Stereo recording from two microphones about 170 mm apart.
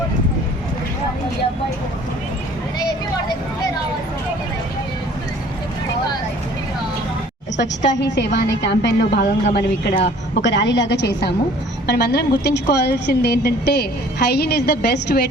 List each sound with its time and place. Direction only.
8.1 s a woman's voice: 90° left; by 10.0 s 75° left (ahead or behind)
10.4 s a woman's voice: 90° left; by 15.3 s 70° left (ahead or behind)